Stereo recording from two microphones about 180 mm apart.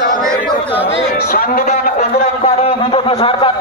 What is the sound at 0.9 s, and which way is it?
A man's voice, 60° left (ahead or behind).